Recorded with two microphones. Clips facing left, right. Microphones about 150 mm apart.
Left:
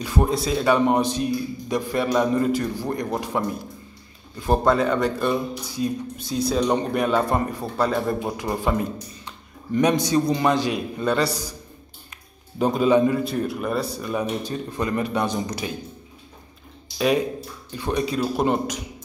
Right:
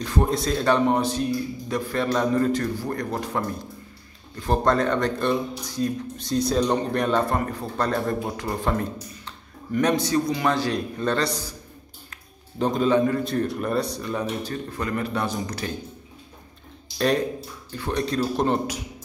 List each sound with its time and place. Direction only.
0.0 s a man's voice: 10° left (ahead or behind)
10.2 s a man's voice: 30° left (ahead or behind)
10.5 s a man's voice: 15° left (ahead or behind)
12.5 s a man's voice: 10° left (ahead or behind)
14.4 s a man's voice: 20° left (ahead or behind)
17.7 s a man's voice: 15° left (ahead or behind)